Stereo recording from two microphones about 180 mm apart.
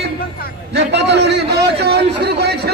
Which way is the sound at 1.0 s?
70° right (ahead or behind).